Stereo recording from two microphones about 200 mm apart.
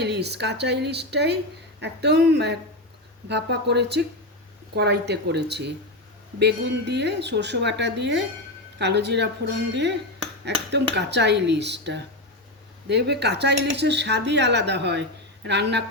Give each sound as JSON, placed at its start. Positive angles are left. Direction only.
{"t": 0.0, "sound": "speech", "side_deg": -55}